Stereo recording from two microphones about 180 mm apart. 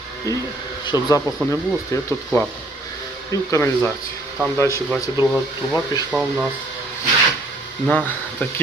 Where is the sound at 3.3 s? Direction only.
20° left (ahead or behind).